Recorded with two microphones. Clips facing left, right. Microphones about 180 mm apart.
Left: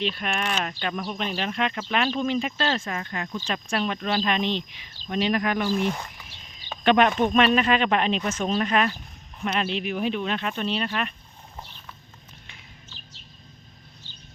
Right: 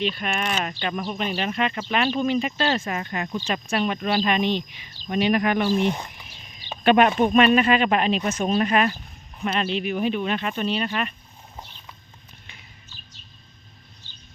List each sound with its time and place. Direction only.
0.0 s speech: centre (ahead or behind); by 6.2 s 20° right (ahead or behind)
6.7 s speech: 10° right (ahead or behind)
8.2 s speech: 15° right (ahead or behind)